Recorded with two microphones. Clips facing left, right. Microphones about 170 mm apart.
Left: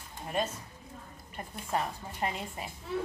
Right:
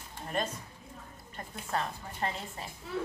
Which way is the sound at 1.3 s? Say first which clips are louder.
Left 2 dB; 15° left (ahead or behind).